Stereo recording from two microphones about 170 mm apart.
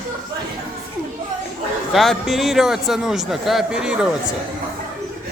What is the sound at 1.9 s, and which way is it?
A man's voice, centre (ahead or behind).